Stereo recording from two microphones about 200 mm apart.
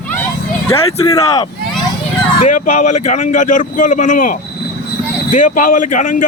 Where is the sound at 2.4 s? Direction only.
40° left (ahead or behind).